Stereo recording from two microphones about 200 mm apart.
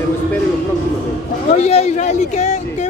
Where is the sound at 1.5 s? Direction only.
35° left (ahead or behind).